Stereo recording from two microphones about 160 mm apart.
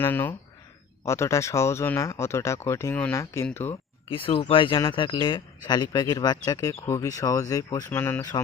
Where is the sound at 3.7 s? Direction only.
35° left (ahead or behind).